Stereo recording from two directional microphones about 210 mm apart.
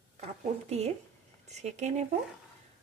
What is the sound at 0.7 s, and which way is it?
Speech, 30° right (ahead or behind).